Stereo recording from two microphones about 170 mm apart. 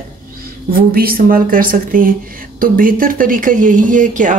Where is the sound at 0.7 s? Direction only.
60° right (ahead or behind).